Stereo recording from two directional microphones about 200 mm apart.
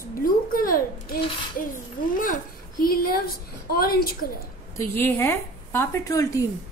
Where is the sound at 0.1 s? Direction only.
45° left (ahead or behind).